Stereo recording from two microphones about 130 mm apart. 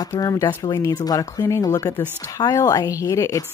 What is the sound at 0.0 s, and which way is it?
Speech, 25° left (ahead or behind).